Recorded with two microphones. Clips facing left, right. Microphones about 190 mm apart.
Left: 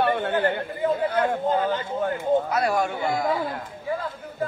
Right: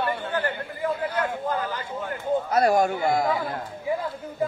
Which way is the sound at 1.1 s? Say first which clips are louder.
Left 4 dB; 25° left (ahead or behind).